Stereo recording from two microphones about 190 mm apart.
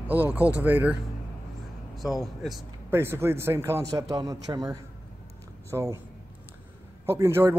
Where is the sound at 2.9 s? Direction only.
10° right (ahead or behind).